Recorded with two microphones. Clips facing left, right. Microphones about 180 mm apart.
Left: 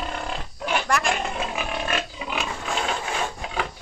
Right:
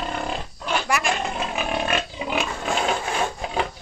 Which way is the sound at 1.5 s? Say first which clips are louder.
Right 3 dB; 30° right (ahead or behind).